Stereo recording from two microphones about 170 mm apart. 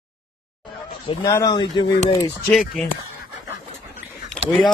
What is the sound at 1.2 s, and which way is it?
Speech, 25° left (ahead or behind).